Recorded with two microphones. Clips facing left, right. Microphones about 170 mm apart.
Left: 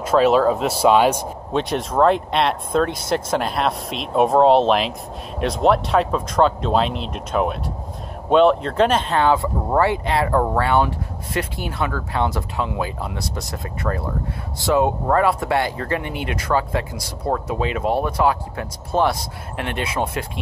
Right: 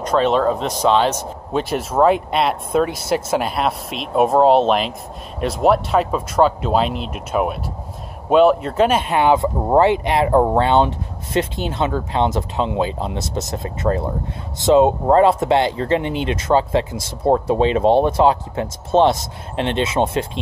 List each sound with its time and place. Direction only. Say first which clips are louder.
0.0 s speech: left 1 dB; 5° left (ahead or behind)
1.5 s speech: right 1 dB; 5° right (ahead or behind); by 20.2 s 25° right (ahead or behind)